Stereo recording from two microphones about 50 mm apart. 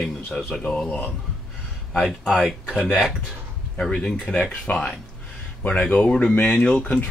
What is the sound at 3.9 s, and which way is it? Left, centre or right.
Speech, centre.